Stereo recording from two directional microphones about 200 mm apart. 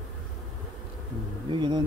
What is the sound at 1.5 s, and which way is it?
Speech, 25° right (ahead or behind).